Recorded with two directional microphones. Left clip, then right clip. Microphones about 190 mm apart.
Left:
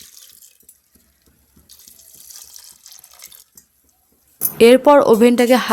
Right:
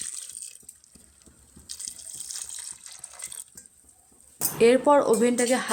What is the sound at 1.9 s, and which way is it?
Water, 40° right (ahead or behind).